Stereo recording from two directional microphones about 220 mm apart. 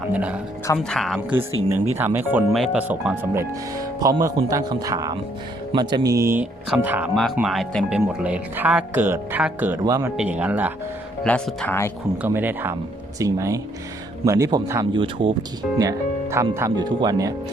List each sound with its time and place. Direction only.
0.1 s speech: 5° right (ahead or behind)
1.7 s speech: 10° right (ahead or behind); by 11.9 s 10° left (ahead or behind)
12.2 s speech: 10° right (ahead or behind)